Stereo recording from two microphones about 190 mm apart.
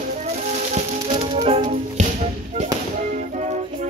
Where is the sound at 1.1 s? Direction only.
30° right (ahead or behind).